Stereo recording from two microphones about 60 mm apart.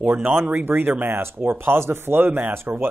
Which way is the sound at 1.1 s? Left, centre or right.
Right.